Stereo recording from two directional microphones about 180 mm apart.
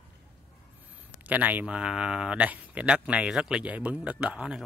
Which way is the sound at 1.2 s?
10° right (ahead or behind).